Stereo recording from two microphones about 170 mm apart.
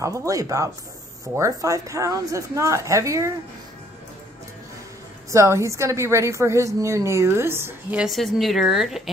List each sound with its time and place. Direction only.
0.0 s a woman's voice: 20° right (ahead or behind)
5.3 s a woman's voice: 15° right (ahead or behind)
8.0 s a woman's voice: centre (ahead or behind)